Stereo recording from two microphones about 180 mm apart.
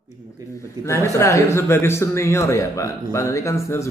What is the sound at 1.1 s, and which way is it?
A man's voice, 15° left (ahead or behind).